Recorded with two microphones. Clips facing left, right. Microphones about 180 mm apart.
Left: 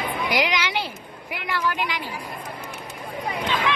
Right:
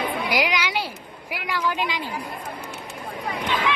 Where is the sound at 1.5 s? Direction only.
15° right (ahead or behind).